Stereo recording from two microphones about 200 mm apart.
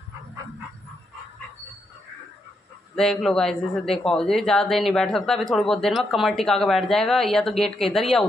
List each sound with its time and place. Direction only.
3.0 s speech: centre (ahead or behind)